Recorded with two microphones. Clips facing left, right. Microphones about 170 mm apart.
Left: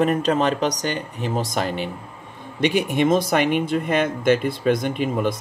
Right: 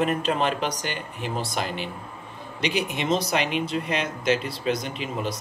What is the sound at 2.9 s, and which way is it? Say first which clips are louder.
Speech: left 6 dB; 50° left (ahead or behind).